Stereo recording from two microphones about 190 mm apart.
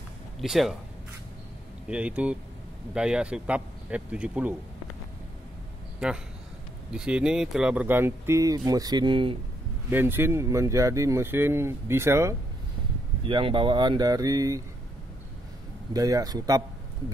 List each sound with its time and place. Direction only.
0.4 s speech: centre (ahead or behind)
1.9 s speech: 5° right (ahead or behind)
5.9 s a man's voice: 5° right (ahead or behind); by 9.4 s 25° right (ahead or behind)
9.8 s speech: 10° right (ahead or behind)
13.2 s speech: 25° right (ahead or behind)
15.9 s speech: 20° right (ahead or behind)